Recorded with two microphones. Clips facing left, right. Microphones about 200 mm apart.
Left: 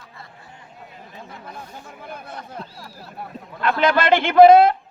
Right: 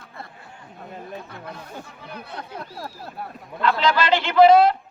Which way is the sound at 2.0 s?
50° left (ahead or behind).